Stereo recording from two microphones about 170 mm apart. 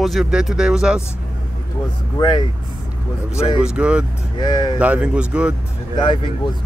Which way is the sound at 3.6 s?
5° right (ahead or behind).